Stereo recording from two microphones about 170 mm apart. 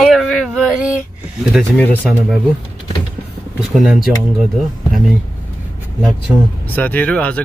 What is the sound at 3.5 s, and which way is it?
Speech, centre (ahead or behind).